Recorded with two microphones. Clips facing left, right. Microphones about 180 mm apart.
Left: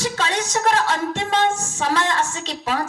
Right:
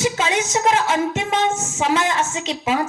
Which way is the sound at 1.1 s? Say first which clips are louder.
Even; 20° right (ahead or behind).